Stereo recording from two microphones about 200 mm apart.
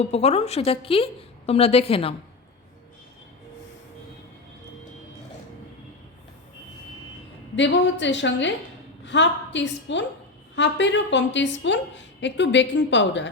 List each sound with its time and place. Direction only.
0.0 s a woman's voice: 30° left (ahead or behind)
7.5 s a woman's voice: 65° left (ahead or behind)